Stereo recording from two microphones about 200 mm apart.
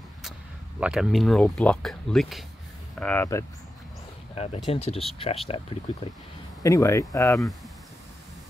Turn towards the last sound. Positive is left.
turn(degrees=0)  # may be behind; listen again after turning